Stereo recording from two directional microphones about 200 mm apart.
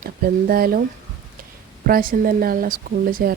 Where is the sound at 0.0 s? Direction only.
45° right (ahead or behind).